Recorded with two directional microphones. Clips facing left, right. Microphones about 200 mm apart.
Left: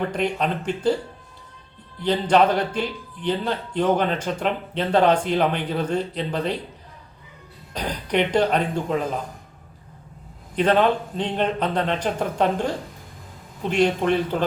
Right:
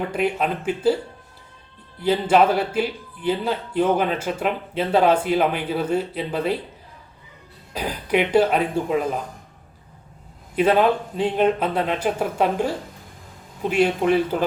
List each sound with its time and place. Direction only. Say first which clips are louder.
0.1 s a man's voice: right 1 dB; 5° right (ahead or behind)
2.0 s a man's voice: right 1 dB; 5° right (ahead or behind)
7.7 s a man's voice: right 2 dB; 5° right (ahead or behind)
10.5 s a man's voice: right 1 dB; 5° right (ahead or behind)